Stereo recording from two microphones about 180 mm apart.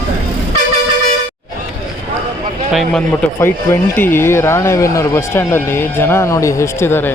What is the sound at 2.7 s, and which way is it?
A man's voice, 5° left (ahead or behind).